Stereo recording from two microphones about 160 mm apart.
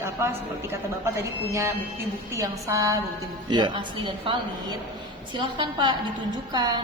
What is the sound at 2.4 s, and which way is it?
A woman's voice, 20° right (ahead or behind).